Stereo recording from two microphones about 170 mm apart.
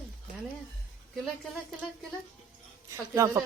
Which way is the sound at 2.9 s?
20° right (ahead or behind).